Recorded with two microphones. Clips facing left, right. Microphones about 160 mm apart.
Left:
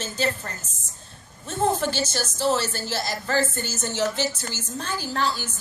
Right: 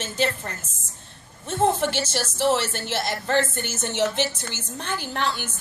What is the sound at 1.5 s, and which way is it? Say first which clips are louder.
A woman's voice: right 2 dB; 25° right (ahead or behind).